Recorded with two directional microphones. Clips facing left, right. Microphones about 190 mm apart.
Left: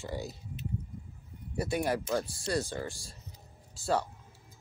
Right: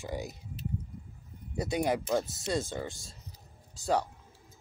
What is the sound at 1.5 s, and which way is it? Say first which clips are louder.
Speech: right 1 dB; 20° right (ahead or behind).